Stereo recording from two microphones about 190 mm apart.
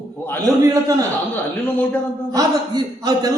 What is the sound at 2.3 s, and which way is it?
A man's voice, 20° right (ahead or behind).